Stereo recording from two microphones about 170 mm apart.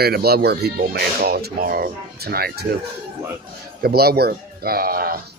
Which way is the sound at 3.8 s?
65° right (ahead or behind).